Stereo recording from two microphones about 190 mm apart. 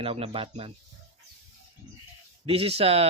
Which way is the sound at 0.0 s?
30° right (ahead or behind).